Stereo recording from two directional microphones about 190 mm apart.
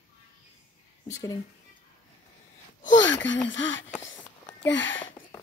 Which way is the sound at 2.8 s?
75° left (ahead or behind).